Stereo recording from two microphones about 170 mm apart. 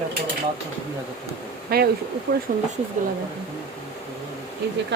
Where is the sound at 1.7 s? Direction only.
60° right (ahead or behind).